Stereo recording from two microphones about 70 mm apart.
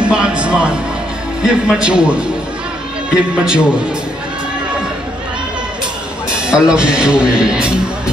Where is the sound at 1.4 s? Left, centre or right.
Centre.